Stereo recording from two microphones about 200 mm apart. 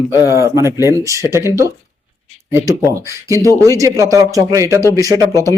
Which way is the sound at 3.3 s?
15° right (ahead or behind).